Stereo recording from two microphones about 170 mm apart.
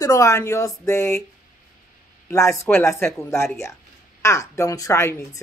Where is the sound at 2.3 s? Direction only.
15° left (ahead or behind).